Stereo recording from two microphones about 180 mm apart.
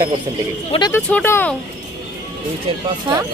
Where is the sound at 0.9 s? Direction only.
10° left (ahead or behind).